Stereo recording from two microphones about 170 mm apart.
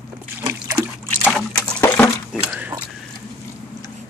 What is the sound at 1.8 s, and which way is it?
Dishes, 10° left (ahead or behind).